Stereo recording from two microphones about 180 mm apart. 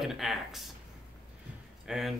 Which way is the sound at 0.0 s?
Centre (ahead or behind).